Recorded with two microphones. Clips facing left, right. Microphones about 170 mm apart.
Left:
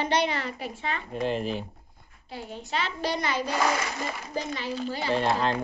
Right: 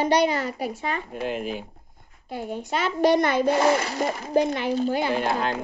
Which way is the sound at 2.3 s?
50° right (ahead or behind).